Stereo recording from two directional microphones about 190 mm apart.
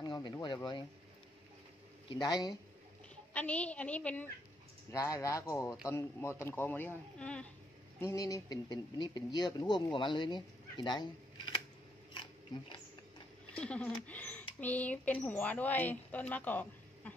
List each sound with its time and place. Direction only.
0.0 s speech: 20° left (ahead or behind)
2.0 s speech: 20° left (ahead or behind)
3.3 s speech: 5° left (ahead or behind)
8.0 s speech: 15° left (ahead or behind)
12.1 s a sound: 25° left (ahead or behind)
13.6 s speech: 5° left (ahead or behind)